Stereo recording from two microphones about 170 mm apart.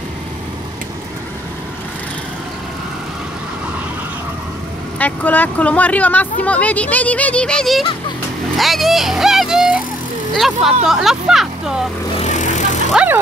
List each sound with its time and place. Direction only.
4.9 s speech: 10° left (ahead or behind)
12.2 s vehicle: 45° left (ahead or behind)
12.9 s speech: 10° right (ahead or behind)